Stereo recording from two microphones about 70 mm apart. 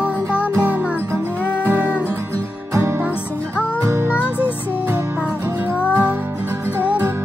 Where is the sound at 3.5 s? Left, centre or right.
Left.